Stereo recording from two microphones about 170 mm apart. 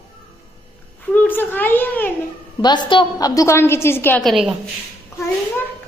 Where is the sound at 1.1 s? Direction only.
10° left (ahead or behind).